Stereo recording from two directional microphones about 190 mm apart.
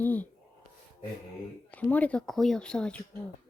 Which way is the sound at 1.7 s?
10° left (ahead or behind).